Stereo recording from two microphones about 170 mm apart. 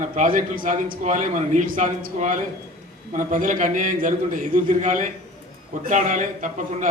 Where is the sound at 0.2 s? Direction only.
50° right (ahead or behind).